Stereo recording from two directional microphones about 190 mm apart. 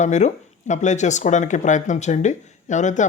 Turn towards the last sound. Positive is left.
turn(degrees=40)  # may be behind; listen again after turning